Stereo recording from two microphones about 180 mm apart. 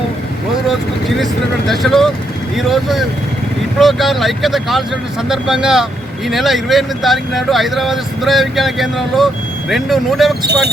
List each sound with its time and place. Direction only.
1.2 s speech: centre (ahead or behind)
10.4 s speech: 65° right (ahead or behind)